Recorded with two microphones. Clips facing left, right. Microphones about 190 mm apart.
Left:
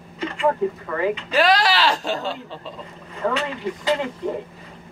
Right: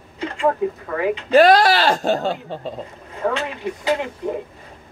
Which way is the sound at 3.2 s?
10° right (ahead or behind).